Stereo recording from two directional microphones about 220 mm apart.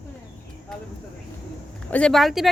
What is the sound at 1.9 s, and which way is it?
Speech, 5° left (ahead or behind).